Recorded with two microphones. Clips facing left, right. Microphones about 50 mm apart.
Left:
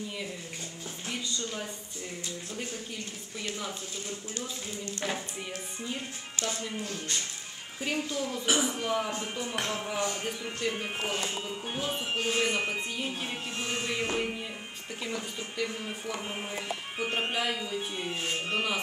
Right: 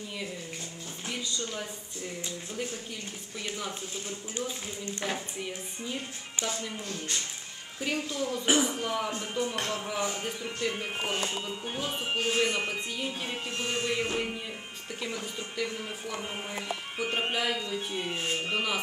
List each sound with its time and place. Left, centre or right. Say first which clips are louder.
1.0 s a sound: right 1 dB; centre
5.0 s speech: right 1 dB; centre
9.9 s speech: even; centre
10.2 s speech: even; centre